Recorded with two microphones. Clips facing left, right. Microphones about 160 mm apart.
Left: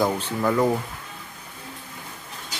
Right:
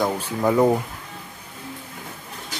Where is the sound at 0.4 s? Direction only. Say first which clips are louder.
Right 4 dB; 20° right (ahead or behind).